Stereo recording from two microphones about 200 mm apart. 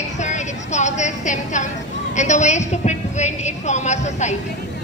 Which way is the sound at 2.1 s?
35° left (ahead or behind).